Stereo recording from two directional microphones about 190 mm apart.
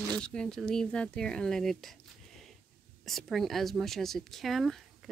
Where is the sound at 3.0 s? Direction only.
Centre (ahead or behind).